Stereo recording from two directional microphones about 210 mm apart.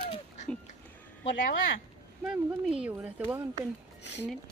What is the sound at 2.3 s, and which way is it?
Speech, 5° right (ahead or behind).